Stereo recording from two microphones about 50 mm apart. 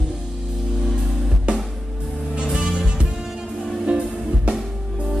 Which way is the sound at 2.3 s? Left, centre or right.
Centre.